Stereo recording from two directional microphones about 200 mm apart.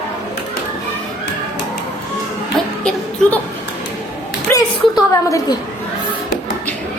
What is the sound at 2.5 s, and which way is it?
Music, 5° left (ahead or behind).